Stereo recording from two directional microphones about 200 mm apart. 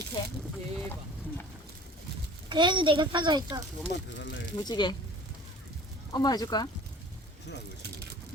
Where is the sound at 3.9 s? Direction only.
60° left (ahead or behind).